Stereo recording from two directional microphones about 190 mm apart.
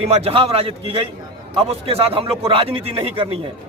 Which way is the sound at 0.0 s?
30° right (ahead or behind).